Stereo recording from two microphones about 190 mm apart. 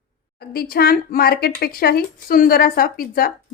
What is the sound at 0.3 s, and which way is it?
A woman's voice, 55° left (ahead or behind).